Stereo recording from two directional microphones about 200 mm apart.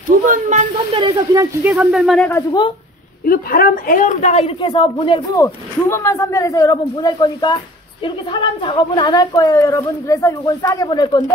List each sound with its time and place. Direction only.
0.3 s speech: 35° right (ahead or behind)
0.9 s speech: 20° right (ahead or behind); by 2.4 s 5° left (ahead or behind)
3.3 s a woman's voice: 45° left (ahead or behind); by 11.1 s 20° left (ahead or behind)